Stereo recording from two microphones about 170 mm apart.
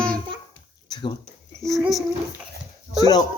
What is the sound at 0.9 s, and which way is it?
Speech, 25° left (ahead or behind).